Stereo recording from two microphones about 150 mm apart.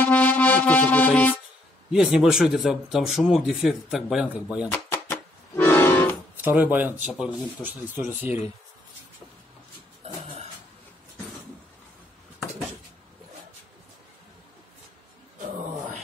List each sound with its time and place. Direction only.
0.0 s music: 10° left (ahead or behind)
1.9 s speech: 5° right (ahead or behind)
4.6 s accordion: 15° left (ahead or behind)
6.3 s speech: 10° right (ahead or behind)